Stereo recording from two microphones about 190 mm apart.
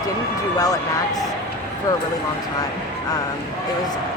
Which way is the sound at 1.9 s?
20° left (ahead or behind).